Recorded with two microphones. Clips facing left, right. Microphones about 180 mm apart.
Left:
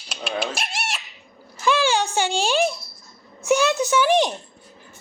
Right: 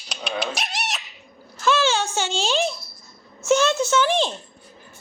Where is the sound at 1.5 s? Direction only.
15° left (ahead or behind).